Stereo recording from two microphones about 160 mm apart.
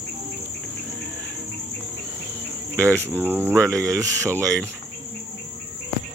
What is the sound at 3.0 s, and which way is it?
Speech, 15° right (ahead or behind).